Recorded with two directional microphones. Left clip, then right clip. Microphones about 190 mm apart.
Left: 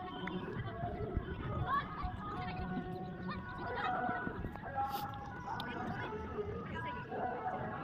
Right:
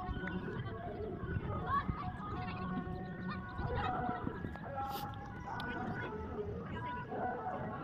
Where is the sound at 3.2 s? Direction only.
35° left (ahead or behind).